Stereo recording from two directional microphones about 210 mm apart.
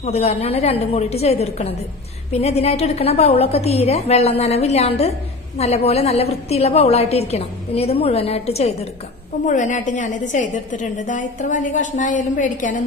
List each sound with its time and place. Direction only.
0.0 s a woman's voice: 30° left (ahead or behind)